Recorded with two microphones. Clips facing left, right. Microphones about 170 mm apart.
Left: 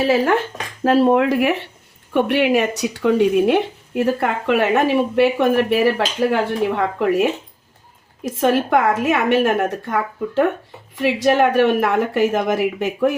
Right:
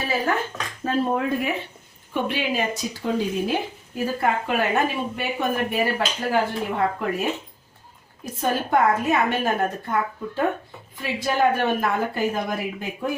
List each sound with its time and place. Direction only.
0.0 s a woman's voice: 90° left
0.9 s a woman's voice: 80° left